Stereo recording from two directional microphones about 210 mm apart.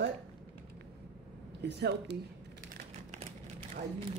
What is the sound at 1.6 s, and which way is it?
Speech, 50° right (ahead or behind).